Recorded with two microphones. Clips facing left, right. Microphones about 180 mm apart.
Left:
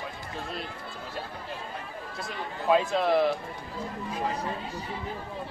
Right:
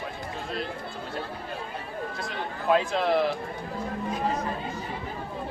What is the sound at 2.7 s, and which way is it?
Speech, centre (ahead or behind).